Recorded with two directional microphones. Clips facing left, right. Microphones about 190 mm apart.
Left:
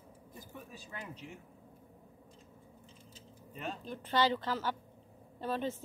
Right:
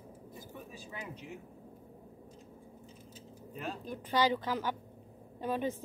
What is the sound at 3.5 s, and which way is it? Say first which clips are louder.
Speech: right 1 dB; centre (ahead or behind).